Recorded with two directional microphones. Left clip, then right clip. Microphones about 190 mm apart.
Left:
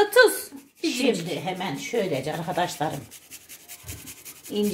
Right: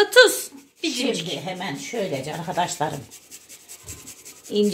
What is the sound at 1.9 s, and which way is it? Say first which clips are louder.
Speech: left 2 dB; 15° right (ahead or behind).